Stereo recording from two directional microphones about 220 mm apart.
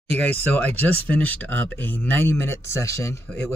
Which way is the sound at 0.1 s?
10° left (ahead or behind).